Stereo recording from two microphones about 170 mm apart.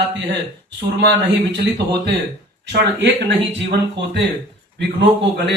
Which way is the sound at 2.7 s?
85° right.